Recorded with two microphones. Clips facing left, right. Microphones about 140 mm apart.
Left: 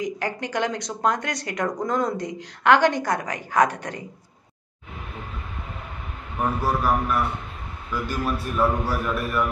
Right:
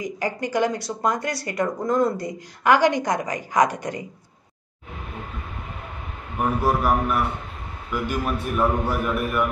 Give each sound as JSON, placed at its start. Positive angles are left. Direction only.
{"t": 0.5, "sound": "speech", "side_deg": -10}
{"t": 6.3, "sound": "a man's voice", "side_deg": -20}